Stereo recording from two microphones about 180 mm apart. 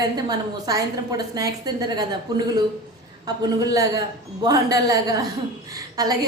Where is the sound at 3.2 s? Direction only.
20° right (ahead or behind).